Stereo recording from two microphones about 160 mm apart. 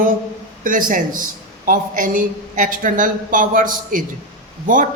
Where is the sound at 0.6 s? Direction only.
55° right (ahead or behind).